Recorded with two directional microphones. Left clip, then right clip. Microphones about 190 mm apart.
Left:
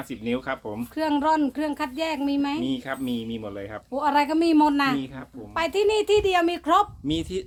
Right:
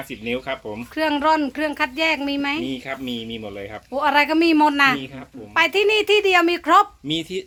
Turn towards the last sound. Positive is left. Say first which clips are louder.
# right 2 dB
turn(degrees=25)  # may be behind; listen again after turning